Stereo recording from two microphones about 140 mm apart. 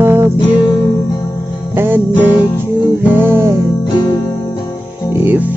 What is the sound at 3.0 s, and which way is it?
Music, 15° right (ahead or behind).